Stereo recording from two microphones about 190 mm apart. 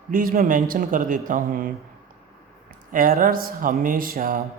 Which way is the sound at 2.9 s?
45° right (ahead or behind).